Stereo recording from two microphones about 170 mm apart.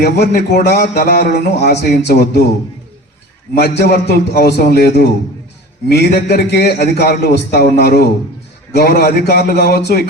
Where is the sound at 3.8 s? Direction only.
70° left (ahead or behind).